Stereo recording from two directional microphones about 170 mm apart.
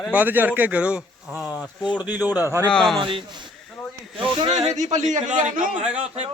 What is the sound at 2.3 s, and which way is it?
Speech, 15° right (ahead or behind).